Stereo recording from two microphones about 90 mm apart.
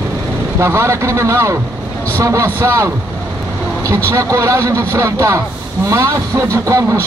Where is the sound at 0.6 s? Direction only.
35° right (ahead or behind).